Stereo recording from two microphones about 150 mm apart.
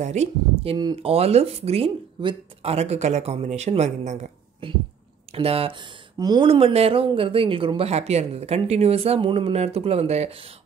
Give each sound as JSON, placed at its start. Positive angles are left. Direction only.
{"t": 0.0, "sound": "speech", "side_deg": -50}
{"t": 5.3, "sound": "speech", "side_deg": -40}